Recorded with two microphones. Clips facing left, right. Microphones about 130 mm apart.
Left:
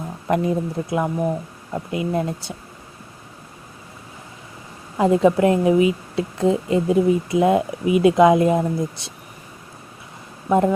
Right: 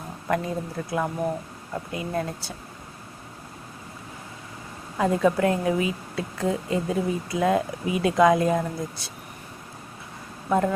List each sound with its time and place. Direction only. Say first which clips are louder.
0.3 s a woman's voice: left 6 dB; 20° left (ahead or behind)
4.9 s a woman's voice: left 6 dB; 25° left (ahead or behind)
10.5 s a woman's voice: left 5 dB; 20° left (ahead or behind)